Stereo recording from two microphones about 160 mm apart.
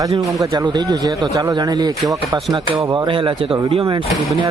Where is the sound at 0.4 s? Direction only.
25° right (ahead or behind).